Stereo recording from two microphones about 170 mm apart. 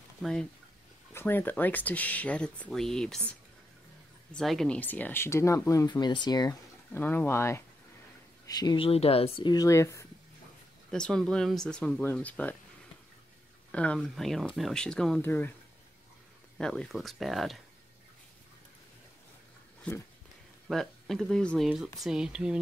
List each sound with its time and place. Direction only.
0.2 s speech: 5° left (ahead or behind); by 6.5 s 25° left (ahead or behind)
6.9 s speech: 10° left (ahead or behind)
10.9 s speech: 5° left (ahead or behind)
13.7 s speech: 5° left (ahead or behind)
16.5 s speech: 5° left (ahead or behind)
19.9 s speech: 10° left (ahead or behind)